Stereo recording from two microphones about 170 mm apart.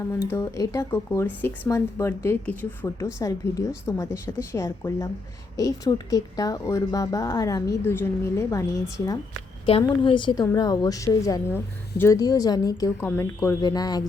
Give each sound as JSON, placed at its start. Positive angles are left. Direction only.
{"t": 0.3, "sound": "speech", "side_deg": 20}
{"t": 9.6, "sound": "speech", "side_deg": 30}